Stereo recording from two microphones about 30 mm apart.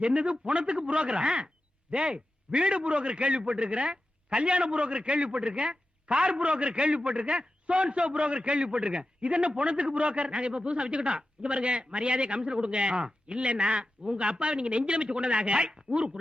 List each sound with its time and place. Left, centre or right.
0.0 s a man's voice: right